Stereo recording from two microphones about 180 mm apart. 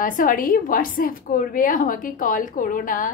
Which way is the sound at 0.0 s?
50° left (ahead or behind).